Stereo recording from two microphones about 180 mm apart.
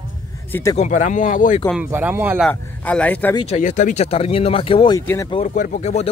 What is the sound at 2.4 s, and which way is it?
Speech, 5° left (ahead or behind).